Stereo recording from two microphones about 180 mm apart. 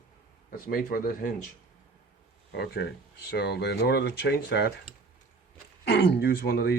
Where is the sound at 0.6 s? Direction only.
50° left (ahead or behind).